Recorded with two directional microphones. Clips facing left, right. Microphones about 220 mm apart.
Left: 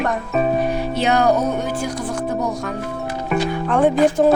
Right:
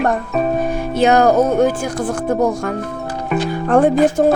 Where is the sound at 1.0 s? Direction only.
45° right (ahead or behind).